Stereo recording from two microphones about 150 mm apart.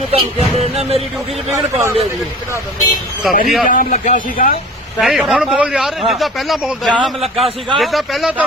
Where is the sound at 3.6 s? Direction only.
65° left (ahead or behind).